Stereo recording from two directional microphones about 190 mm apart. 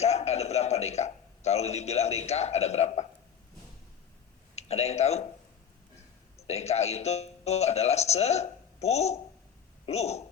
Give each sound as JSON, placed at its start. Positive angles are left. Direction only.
{"t": 0.0, "sound": "a sound", "side_deg": 35}
{"t": 4.5, "sound": "speech", "side_deg": 35}
{"t": 6.3, "sound": "a woman's voice", "side_deg": 35}